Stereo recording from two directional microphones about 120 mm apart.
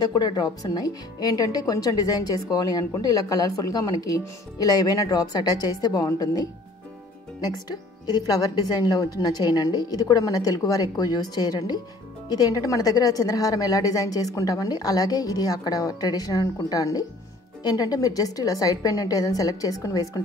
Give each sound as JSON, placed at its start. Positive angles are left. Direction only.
{"t": 0.0, "sound": "speech", "side_deg": 40}
{"t": 8.1, "sound": "speech", "side_deg": 35}